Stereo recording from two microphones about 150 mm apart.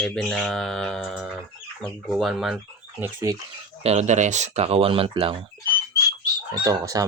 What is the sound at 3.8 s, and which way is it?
Speech, 45° right (ahead or behind).